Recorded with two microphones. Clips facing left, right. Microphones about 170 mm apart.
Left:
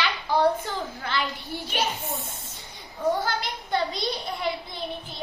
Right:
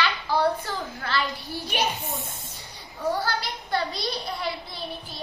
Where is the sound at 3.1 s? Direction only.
20° left (ahead or behind).